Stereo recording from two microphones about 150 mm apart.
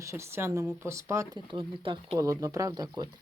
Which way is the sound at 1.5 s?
35° right (ahead or behind).